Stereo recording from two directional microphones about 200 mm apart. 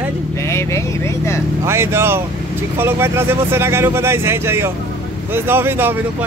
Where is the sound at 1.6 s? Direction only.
15° right (ahead or behind).